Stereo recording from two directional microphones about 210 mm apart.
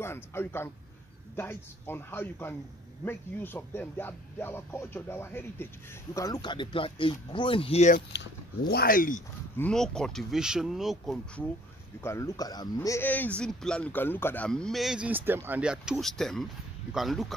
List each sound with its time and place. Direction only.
0.0 s speech: 10° left (ahead or behind); by 8.0 s 30° left (ahead or behind)
8.1 s speech: 50° left (ahead or behind)
9.6 s speech: 5° left (ahead or behind)
12.0 s speech: 15° left (ahead or behind)